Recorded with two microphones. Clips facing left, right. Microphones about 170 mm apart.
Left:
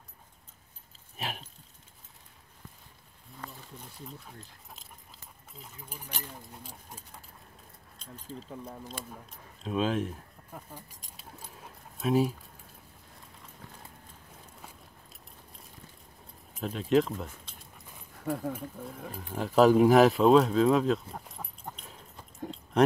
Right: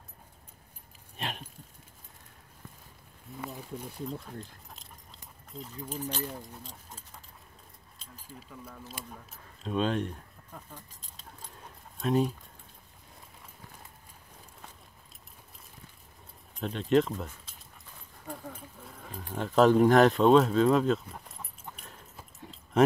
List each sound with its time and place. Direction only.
1.1 s a sound: 5° left (ahead or behind)
5.5 s speech: 5° left (ahead or behind)
8.0 s speech: 10° right (ahead or behind)
8.5 s speech: 30° left (ahead or behind)
8.8 s speech: 5° right (ahead or behind)
10.5 s keys jangling: 10° left (ahead or behind)
16.5 s speech: 5° left (ahead or behind)
18.2 s speech: 65° left (ahead or behind)
18.5 s speech: 5° left (ahead or behind)
22.7 s speech: centre (ahead or behind)